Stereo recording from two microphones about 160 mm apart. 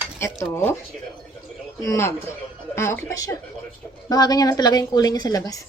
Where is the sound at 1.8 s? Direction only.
20° left (ahead or behind).